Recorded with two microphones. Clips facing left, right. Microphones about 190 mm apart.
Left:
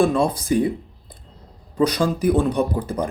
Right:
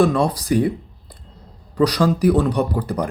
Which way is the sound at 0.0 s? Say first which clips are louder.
Right 1 dB; 25° left (ahead or behind).